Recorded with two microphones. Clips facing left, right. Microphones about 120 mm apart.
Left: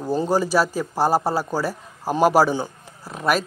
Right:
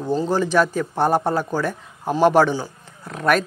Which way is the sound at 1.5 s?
35° left (ahead or behind).